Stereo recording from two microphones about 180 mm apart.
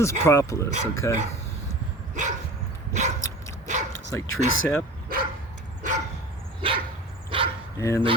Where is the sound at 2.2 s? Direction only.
40° right (ahead or behind).